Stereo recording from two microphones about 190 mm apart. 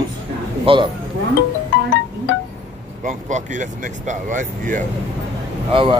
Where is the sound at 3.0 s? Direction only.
40° right (ahead or behind).